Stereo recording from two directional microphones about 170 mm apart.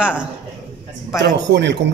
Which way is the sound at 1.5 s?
90° right.